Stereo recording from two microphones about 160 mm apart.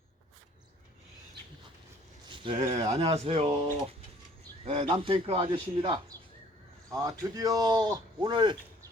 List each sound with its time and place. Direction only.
2.3 s a sound: 30° right (ahead or behind)
2.6 s speech: 40° right (ahead or behind)
4.6 s speech: 35° right (ahead or behind)
6.9 s speech: 20° right (ahead or behind)